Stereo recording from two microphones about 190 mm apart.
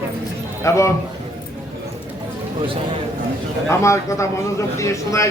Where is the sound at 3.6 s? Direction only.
15° left (ahead or behind).